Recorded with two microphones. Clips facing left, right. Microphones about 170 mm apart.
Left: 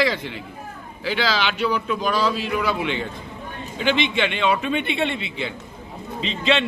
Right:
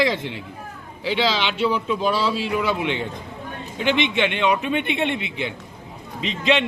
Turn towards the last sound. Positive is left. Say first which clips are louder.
# right 1 dB
turn(degrees=-15)  # may be behind; listen again after turning